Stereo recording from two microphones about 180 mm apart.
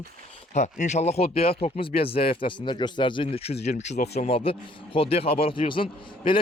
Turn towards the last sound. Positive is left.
turn(degrees=30)  # may be behind; listen again after turning